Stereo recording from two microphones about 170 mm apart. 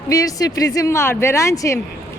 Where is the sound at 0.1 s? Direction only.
20° left (ahead or behind).